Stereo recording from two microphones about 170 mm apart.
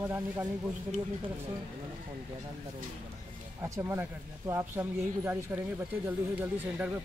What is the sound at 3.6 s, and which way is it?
Speech, 15° right (ahead or behind).